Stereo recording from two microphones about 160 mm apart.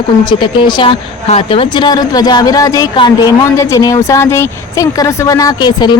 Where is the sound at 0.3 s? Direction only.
30° left (ahead or behind).